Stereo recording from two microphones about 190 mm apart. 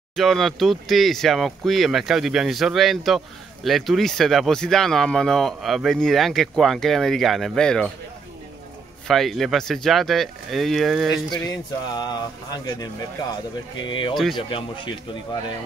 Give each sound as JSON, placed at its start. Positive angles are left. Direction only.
{"t": 0.1, "sound": "speech", "side_deg": 0}
{"t": 9.0, "sound": "speech", "side_deg": 0}
{"t": 11.4, "sound": "speech", "side_deg": 20}